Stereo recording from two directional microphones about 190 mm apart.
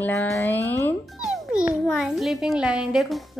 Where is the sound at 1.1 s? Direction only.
Centre (ahead or behind).